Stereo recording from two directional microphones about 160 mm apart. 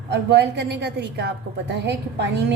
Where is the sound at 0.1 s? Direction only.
90° right.